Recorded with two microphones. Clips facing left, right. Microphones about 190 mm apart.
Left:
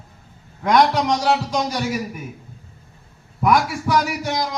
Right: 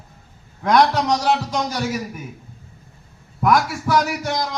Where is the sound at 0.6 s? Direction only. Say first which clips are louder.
Even; centre (ahead or behind).